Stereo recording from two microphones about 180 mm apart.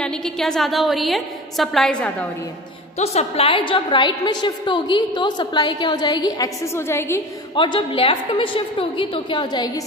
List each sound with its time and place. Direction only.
0.0 s a woman's voice: 5° left (ahead or behind)
3.0 s a woman's voice: 35° left (ahead or behind); by 7.2 s 15° left (ahead or behind)
7.5 s a woman's voice: 25° left (ahead or behind)